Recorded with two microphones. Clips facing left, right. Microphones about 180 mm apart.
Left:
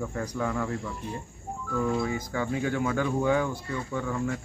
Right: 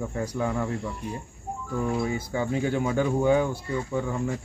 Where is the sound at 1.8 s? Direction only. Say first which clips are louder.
Even; 20° right (ahead or behind).